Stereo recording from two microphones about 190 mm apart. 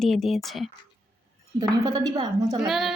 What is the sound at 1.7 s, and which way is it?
Speech, 20° right (ahead or behind).